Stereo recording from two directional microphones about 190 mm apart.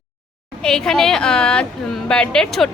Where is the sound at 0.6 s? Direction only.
5° left (ahead or behind).